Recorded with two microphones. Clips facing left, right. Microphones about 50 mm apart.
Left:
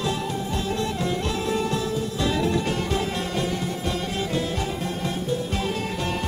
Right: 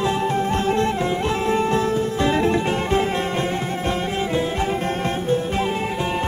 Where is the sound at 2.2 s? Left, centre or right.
Right.